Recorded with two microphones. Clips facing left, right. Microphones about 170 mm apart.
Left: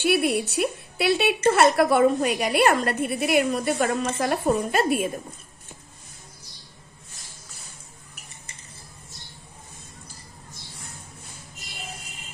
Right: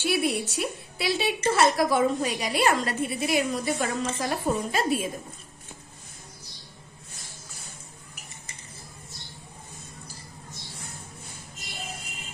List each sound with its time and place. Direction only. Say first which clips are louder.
0.0 s a woman's voice: left 4 dB; 60° left (ahead or behind)